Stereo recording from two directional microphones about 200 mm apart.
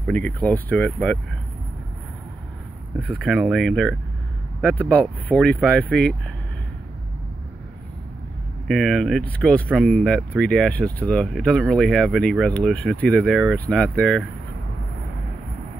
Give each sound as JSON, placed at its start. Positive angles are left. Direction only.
{"t": 0.0, "sound": "speech", "side_deg": 5}
{"t": 3.2, "sound": "speech", "side_deg": 0}
{"t": 8.6, "sound": "speech", "side_deg": 0}